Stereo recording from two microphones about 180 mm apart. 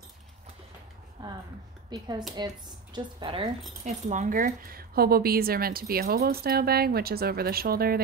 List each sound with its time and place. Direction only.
1.9 s speech: 25° right (ahead or behind)
3.8 s speech: 45° right (ahead or behind)